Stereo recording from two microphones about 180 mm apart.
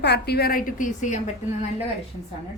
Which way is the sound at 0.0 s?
65° left (ahead or behind).